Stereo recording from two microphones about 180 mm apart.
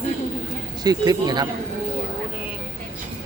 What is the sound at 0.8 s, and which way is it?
Speech, 20° right (ahead or behind).